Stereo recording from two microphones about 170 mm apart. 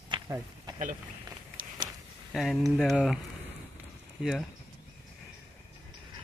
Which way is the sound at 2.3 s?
Centre (ahead or behind).